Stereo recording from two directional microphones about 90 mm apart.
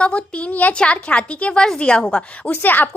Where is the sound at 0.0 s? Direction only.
15° left (ahead or behind).